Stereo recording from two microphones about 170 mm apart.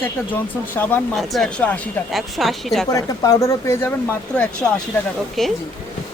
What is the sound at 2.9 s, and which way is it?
A woman's voice, 20° left (ahead or behind).